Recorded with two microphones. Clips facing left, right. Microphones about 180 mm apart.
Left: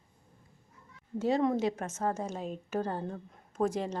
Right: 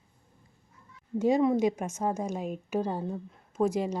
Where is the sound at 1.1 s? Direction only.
15° right (ahead or behind).